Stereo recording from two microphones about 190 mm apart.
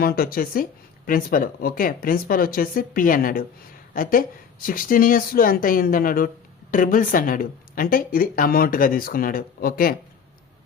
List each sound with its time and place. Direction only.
0.0 s a woman's voice: 50° left (ahead or behind)